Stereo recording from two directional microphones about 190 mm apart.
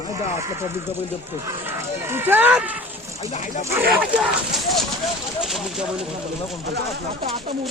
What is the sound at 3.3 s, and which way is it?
Speech, 40° left (ahead or behind).